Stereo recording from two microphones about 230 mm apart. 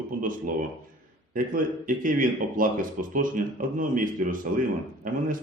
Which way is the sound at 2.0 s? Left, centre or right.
Right.